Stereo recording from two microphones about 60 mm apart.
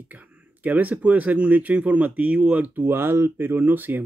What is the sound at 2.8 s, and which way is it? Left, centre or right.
Speech, right.